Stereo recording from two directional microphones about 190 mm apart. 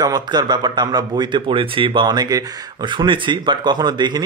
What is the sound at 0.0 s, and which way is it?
A man's voice, 20° right (ahead or behind).